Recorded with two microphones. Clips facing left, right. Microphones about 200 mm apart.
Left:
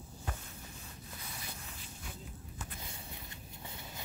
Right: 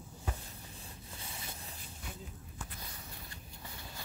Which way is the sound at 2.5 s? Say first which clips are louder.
Left 1 dB; 20° left (ahead or behind).